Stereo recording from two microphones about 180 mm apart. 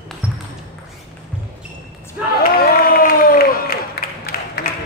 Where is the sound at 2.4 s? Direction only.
55° left (ahead or behind).